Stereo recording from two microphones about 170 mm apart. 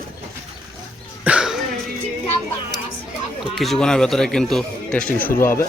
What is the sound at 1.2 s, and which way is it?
Cough, 5° right (ahead or behind).